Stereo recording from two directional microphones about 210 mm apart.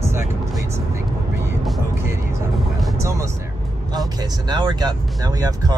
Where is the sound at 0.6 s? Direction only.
10° right (ahead or behind).